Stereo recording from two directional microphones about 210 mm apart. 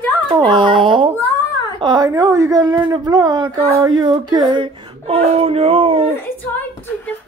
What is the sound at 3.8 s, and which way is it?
Child singing, 20° right (ahead or behind).